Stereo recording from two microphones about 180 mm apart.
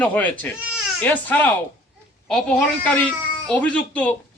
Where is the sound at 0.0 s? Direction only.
10° left (ahead or behind).